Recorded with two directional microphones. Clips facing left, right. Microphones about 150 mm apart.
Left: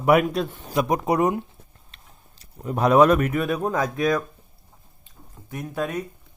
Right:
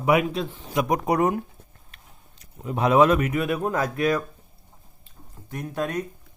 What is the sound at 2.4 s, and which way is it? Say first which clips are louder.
Speech: left 2 dB; 40° left (ahead or behind).